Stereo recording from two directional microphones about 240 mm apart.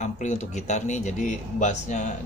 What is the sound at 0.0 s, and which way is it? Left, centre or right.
A man's voice, left.